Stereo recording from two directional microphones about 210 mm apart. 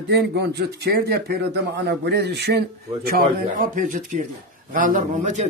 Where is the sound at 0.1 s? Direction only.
50° right (ahead or behind).